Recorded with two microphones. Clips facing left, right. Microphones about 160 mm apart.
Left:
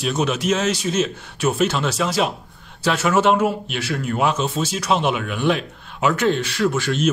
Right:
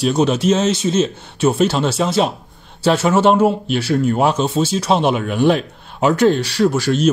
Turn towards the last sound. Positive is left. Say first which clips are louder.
# right 5 dB
turn(degrees=-35)  # may be behind; listen again after turning